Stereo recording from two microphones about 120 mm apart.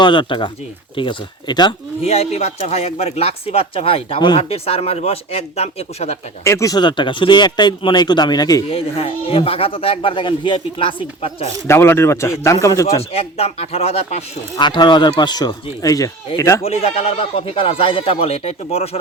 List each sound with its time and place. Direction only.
0.0 s speech: 40° left (ahead or behind)
2.0 s speech: 60° left (ahead or behind)
6.4 s a man's voice: 25° left (ahead or behind)
6.7 s speech: 40° left (ahead or behind)
8.7 s speech: 55° left (ahead or behind)
11.7 s a man's voice: 20° left (ahead or behind)
13.0 s speech: 55° left (ahead or behind)
14.5 s speech: 40° left (ahead or behind)
16.6 s speech: 60° left (ahead or behind)